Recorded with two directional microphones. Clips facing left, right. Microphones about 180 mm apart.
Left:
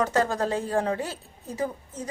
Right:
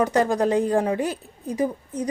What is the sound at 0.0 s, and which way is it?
A woman's voice, 15° right (ahead or behind).